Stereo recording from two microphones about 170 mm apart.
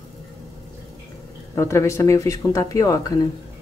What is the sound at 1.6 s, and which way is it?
Speech, 15° left (ahead or behind).